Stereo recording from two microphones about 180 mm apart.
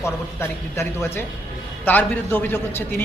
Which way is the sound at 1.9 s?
10° left (ahead or behind).